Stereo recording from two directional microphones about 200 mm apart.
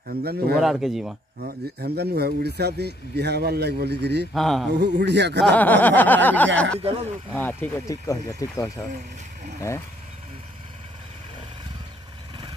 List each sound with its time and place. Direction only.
0.2 s speech: 50° right (ahead or behind)
0.6 s speech: centre (ahead or behind)
1.8 s a man's voice: 55° right (ahead or behind)
4.3 s speech: centre (ahead or behind)
4.7 s a man's voice: 60° right (ahead or behind)
5.4 s speech: 10° left (ahead or behind)